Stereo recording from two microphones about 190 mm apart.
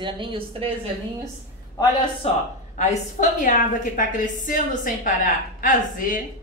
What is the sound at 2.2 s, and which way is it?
A woman's voice, 30° left (ahead or behind).